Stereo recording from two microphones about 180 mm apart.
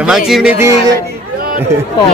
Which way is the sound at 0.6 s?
15° right (ahead or behind).